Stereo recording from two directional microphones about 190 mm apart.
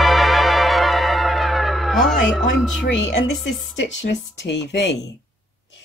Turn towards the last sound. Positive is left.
turn(degrees=70)  # may be behind; listen again after turning